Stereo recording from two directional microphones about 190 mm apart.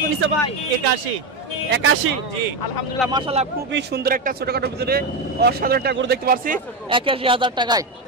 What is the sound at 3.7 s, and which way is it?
Speech, 60° right (ahead or behind).